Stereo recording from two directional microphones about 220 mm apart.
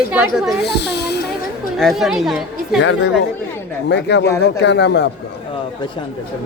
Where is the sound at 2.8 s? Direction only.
60° left (ahead or behind).